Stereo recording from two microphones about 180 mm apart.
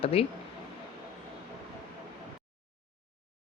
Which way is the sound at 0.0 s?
30° left (ahead or behind).